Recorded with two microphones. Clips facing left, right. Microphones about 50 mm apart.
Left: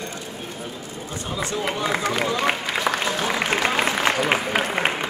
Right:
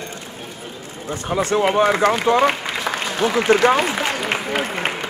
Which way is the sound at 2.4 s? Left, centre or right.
Centre.